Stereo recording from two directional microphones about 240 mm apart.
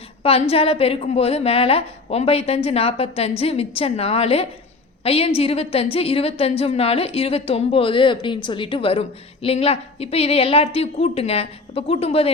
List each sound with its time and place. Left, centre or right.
0.2 s a woman's voice: left